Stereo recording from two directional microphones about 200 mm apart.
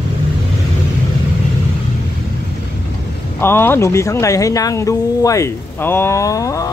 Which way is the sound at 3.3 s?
10° left (ahead or behind).